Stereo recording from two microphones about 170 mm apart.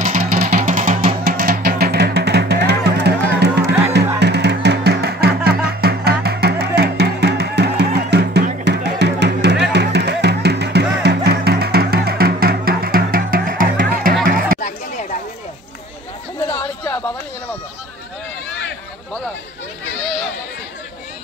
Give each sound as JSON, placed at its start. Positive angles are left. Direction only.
{"t": 0.0, "sound": "music", "side_deg": -50}
{"t": 14.6, "sound": "chatter", "side_deg": 50}